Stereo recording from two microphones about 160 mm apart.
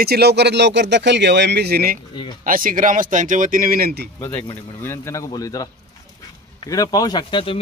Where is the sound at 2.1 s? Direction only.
30° left (ahead or behind).